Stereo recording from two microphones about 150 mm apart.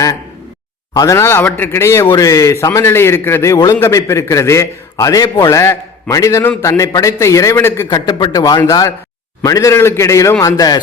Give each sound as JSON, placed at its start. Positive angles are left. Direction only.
{"t": 0.9, "sound": "a man's voice", "side_deg": 20}